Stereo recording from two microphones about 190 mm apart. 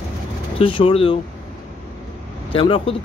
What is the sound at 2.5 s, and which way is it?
Speech, 30° left (ahead or behind).